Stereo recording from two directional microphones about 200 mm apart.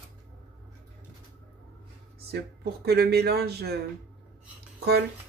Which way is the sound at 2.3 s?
50° right (ahead or behind).